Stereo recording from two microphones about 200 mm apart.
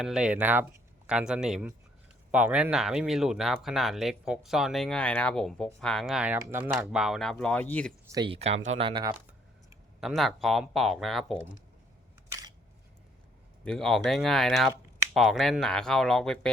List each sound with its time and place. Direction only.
0.0 s speech: 5° right (ahead or behind)
8.0 s speech: 20° right (ahead or behind); by 8.9 s 35° right (ahead or behind)
8.9 s speech: 25° right (ahead or behind)
10.0 s speech: centre (ahead or behind)
12.3 s single-lens reflex camera: 15° right (ahead or behind)
13.7 s speech: centre (ahead or behind)